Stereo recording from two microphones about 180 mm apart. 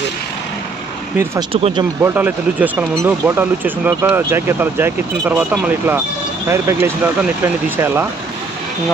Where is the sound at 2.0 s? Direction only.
10° right (ahead or behind).